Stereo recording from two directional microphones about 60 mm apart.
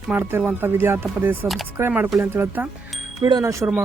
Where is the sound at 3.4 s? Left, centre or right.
Right.